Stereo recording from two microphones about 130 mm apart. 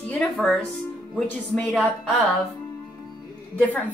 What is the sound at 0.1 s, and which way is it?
A woman's voice, 5° left (ahead or behind).